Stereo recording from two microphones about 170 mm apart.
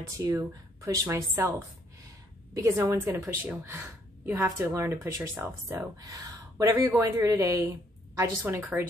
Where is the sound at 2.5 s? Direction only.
20° right (ahead or behind).